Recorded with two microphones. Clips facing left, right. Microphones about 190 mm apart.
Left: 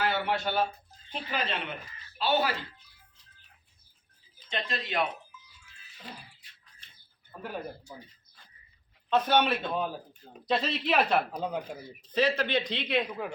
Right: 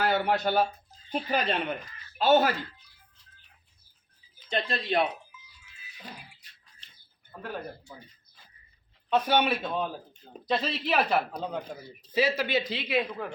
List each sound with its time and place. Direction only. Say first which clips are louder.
0.0 s speech: right 3 dB; 40° right (ahead or behind)
4.4 s speech: right 5 dB; 35° right (ahead or behind)
9.0 s a man's voice: even; 10° right (ahead or behind); by 11.6 s 10° left (ahead or behind)
12.1 s a man's voice: right 1 dB; 10° right (ahead or behind)